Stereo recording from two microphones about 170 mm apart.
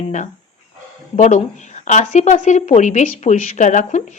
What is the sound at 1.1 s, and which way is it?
Speech, 45° left (ahead or behind).